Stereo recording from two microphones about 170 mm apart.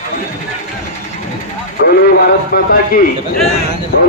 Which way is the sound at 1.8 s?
65° left (ahead or behind).